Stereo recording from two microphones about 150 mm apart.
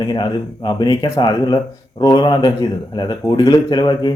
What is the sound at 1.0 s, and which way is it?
Speech, 45° left (ahead or behind).